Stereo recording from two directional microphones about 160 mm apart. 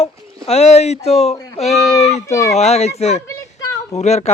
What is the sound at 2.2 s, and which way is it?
Speech, 20° left (ahead or behind).